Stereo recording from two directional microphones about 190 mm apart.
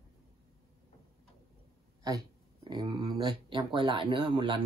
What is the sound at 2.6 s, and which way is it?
Speech, 25° right (ahead or behind).